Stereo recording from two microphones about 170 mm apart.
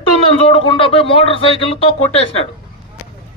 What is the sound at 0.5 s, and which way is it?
A man's voice, 30° left (ahead or behind).